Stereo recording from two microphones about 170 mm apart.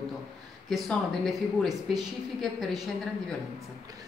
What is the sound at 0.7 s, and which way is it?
A woman's voice, centre (ahead or behind).